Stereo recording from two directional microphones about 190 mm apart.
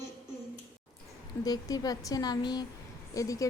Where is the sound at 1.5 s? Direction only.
20° left (ahead or behind).